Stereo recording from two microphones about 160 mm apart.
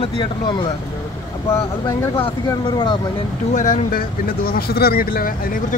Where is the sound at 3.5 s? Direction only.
55° left (ahead or behind).